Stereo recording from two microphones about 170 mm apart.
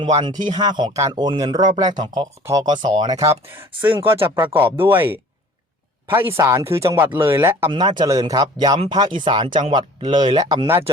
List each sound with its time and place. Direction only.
0.0 s speech: 25° right (ahead or behind)
7.7 s speech: 25° right (ahead or behind)